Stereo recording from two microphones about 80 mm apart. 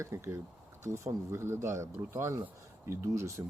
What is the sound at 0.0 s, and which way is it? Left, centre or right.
Speech, right.